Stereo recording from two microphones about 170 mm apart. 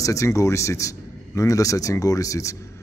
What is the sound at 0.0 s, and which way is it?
A man's voice, 20° left (ahead or behind).